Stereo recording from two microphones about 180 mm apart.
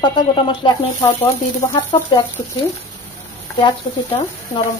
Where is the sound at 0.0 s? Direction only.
25° left (ahead or behind).